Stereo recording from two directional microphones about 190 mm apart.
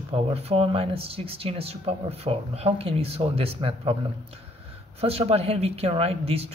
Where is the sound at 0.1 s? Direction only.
35° right (ahead or behind).